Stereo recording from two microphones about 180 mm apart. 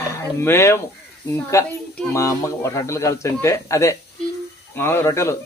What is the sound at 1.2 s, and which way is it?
Goose, 15° left (ahead or behind).